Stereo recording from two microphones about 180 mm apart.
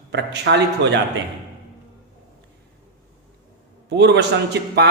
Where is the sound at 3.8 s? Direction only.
70° right (ahead or behind).